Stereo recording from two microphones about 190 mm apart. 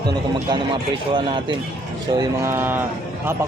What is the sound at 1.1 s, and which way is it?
Speech, 25° right (ahead or behind).